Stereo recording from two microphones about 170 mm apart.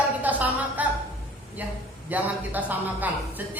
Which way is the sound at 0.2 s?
10° right (ahead or behind).